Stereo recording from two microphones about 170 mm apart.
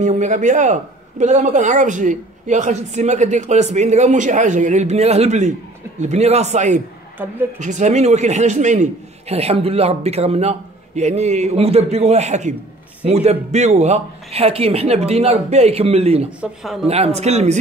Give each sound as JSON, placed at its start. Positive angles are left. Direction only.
{"t": 0.0, "sound": "a man's voice", "side_deg": -45}
{"t": 16.3, "sound": "speech", "side_deg": -5}
{"t": 16.8, "sound": "a man's voice", "side_deg": -40}